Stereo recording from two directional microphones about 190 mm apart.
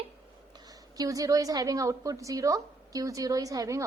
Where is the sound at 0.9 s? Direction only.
20° right (ahead or behind).